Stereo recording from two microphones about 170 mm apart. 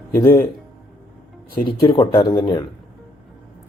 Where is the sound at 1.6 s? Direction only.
25° left (ahead or behind).